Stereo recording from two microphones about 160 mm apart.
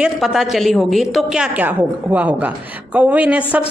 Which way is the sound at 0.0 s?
Centre (ahead or behind).